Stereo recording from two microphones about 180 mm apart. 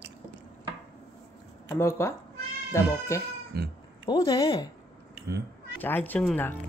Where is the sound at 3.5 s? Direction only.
60° right (ahead or behind).